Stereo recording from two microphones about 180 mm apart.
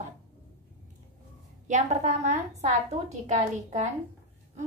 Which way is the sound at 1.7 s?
40° right (ahead or behind).